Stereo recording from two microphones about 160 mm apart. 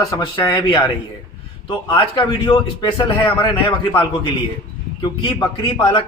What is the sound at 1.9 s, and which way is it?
A man's voice, 30° left (ahead or behind).